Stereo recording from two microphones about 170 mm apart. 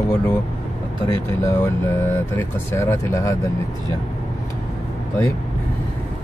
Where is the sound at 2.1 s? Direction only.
15° left (ahead or behind).